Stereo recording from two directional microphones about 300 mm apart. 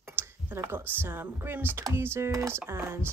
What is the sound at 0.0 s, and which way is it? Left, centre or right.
Speech, centre.